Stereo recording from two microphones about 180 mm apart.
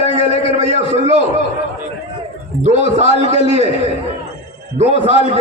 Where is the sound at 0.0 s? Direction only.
35° right (ahead or behind).